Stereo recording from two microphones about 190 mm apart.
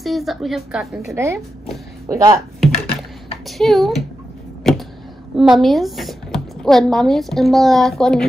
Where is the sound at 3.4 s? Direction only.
Centre (ahead or behind).